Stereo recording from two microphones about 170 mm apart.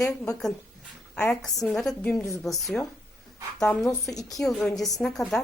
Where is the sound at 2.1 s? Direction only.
20° left (ahead or behind).